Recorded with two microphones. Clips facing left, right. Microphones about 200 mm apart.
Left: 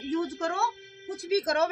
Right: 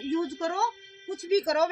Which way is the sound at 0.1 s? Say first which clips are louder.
Right 1 dB; centre (ahead or behind).